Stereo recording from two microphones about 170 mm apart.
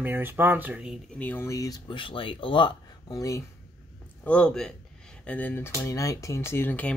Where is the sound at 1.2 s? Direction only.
15° left (ahead or behind).